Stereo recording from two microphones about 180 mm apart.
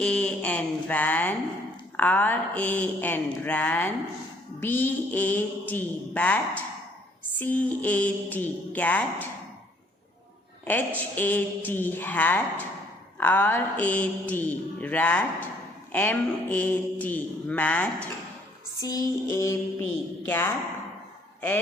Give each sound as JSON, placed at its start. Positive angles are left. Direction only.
{"t": 0.0, "sound": "a man's voice", "side_deg": 5}
{"t": 10.7, "sound": "a man's voice", "side_deg": 10}
{"t": 18.8, "sound": "a man's voice", "side_deg": 20}